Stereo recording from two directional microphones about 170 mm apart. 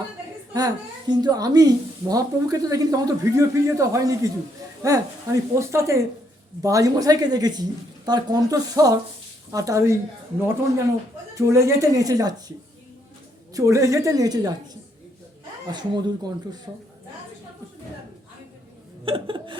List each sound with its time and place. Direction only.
0.5 s a woman's voice: 25° right (ahead or behind)
11.3 s a woman's voice: 15° right (ahead or behind)
19.0 s a sound: 30° right (ahead or behind)